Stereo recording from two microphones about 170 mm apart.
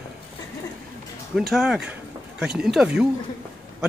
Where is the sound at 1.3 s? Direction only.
Centre (ahead or behind).